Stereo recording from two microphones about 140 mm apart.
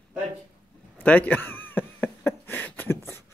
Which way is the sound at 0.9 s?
10° left (ahead or behind).